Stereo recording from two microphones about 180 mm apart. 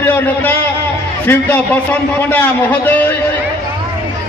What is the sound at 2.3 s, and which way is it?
Speech, 10° left (ahead or behind).